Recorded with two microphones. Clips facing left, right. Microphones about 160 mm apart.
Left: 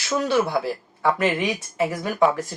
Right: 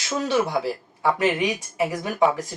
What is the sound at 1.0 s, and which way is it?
Speech, 15° right (ahead or behind).